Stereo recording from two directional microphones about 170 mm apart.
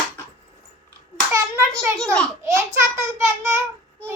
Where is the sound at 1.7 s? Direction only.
5° left (ahead or behind).